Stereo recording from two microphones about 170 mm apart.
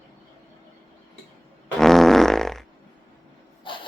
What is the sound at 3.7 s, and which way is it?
Snort, 30° left (ahead or behind).